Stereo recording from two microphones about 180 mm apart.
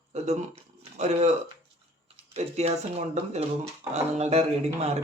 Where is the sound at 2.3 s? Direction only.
35° right (ahead or behind).